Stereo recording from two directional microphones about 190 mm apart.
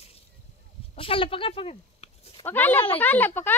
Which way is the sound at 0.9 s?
30° left (ahead or behind).